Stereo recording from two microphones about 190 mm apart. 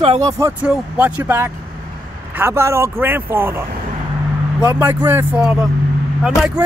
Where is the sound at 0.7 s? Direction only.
10° right (ahead or behind).